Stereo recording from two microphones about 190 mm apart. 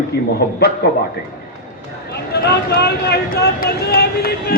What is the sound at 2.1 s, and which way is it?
Speech, 60° left (ahead or behind).